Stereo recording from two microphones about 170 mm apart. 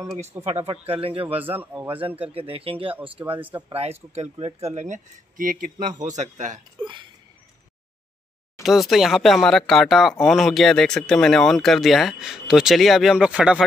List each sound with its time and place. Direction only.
0.4 s speech: 35° right (ahead or behind)
1.4 s a man's voice: 10° right (ahead or behind)
1.9 s speech: 30° right (ahead or behind)
3.3 s a man's voice: 10° right (ahead or behind)
3.7 s speech: 40° right (ahead or behind); by 5.9 s 55° right (ahead or behind)
6.3 s speech: 45° right (ahead or behind)
8.6 s speech: centre (ahead or behind)